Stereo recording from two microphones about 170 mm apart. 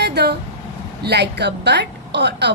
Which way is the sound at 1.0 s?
75° right (ahead or behind).